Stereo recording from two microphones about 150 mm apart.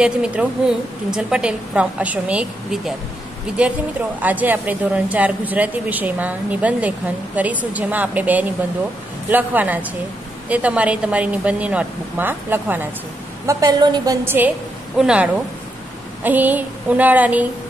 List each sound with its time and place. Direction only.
0.0 s speech: 5° right (ahead or behind)
13.5 s a woman's voice: 25° right (ahead or behind)
14.2 s speech: 15° right (ahead or behind)